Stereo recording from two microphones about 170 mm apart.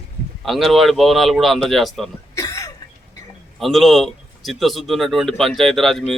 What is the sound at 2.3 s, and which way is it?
Cough, 20° left (ahead or behind).